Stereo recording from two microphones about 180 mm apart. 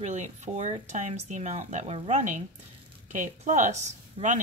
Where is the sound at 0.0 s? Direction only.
40° right (ahead or behind).